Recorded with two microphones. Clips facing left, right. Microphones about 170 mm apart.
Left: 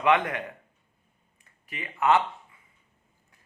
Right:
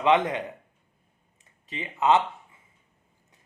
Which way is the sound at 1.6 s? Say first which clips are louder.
Right 1 dB; 20° right (ahead or behind).